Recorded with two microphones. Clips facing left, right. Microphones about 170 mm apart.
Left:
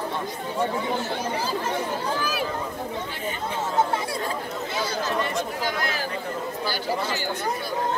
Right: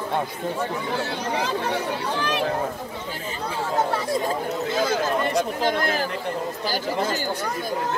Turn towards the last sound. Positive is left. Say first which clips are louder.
# right 5 dB
turn(degrees=-50)  # may be behind; listen again after turning